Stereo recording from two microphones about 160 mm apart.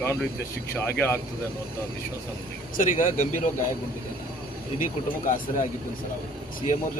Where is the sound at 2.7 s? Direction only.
55° left (ahead or behind).